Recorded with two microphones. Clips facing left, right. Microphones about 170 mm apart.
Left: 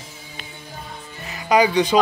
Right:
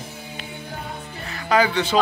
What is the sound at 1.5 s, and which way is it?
Speech, 15° left (ahead or behind).